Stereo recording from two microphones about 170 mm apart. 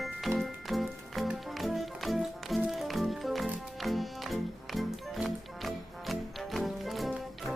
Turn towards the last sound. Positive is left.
turn(degrees=0)  # may be behind; listen again after turning